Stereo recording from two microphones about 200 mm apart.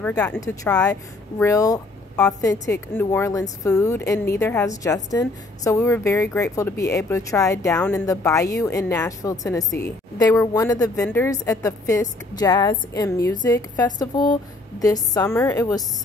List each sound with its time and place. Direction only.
0.2 s a woman's voice: 10° left (ahead or behind)